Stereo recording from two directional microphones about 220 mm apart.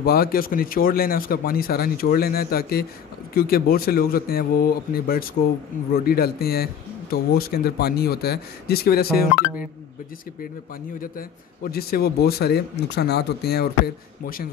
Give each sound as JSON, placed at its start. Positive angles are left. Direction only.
{"t": 0.0, "sound": "a man's voice", "side_deg": 45}
{"t": 11.7, "sound": "speech", "side_deg": 45}